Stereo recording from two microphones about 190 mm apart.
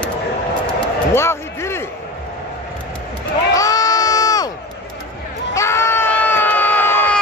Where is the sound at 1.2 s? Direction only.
15° left (ahead or behind).